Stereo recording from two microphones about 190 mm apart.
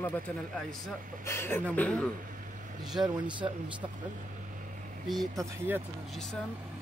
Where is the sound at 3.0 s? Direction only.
25° right (ahead or behind).